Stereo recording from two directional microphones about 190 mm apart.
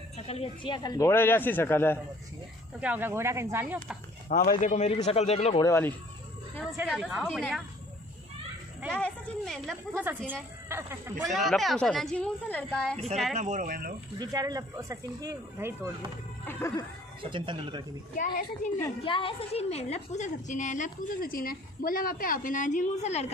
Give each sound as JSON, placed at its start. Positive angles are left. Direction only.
{"t": 0.3, "sound": "speech", "side_deg": 30}
{"t": 2.8, "sound": "speech", "side_deg": -10}
{"t": 4.3, "sound": "a woman's voice", "side_deg": 40}
{"t": 5.6, "sound": "speech", "side_deg": 15}
{"t": 6.6, "sound": "a woman's voice", "side_deg": 0}
{"t": 8.9, "sound": "a woman's voice", "side_deg": 5}
{"t": 10.0, "sound": "speech", "side_deg": -10}
{"t": 11.2, "sound": "a woman's voice", "side_deg": 0}
{"t": 13.3, "sound": "speech", "side_deg": -40}
{"t": 14.1, "sound": "speech", "side_deg": -20}
{"t": 16.4, "sound": "speech", "side_deg": 15}
{"t": 17.2, "sound": "speech", "side_deg": -25}
{"t": 19.0, "sound": "a woman's voice", "side_deg": 25}